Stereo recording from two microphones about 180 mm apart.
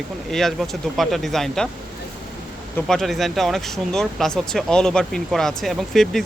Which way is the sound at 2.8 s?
Centre (ahead or behind).